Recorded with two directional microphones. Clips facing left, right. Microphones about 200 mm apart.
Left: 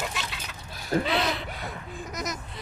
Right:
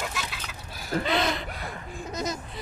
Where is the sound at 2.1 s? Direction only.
30° right (ahead or behind).